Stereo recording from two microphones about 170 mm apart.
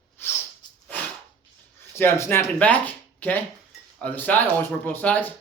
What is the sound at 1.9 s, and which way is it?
Speech, 15° left (ahead or behind).